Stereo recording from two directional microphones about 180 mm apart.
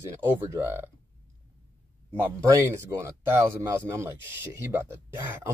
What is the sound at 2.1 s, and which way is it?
Speech, 15° right (ahead or behind).